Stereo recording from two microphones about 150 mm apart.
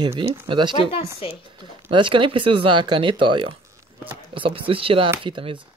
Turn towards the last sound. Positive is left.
turn(degrees=-35)  # may be behind; listen again after turning